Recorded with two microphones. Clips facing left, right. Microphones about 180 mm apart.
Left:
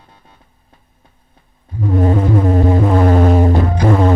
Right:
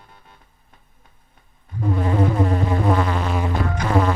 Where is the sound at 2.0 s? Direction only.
35° left (ahead or behind).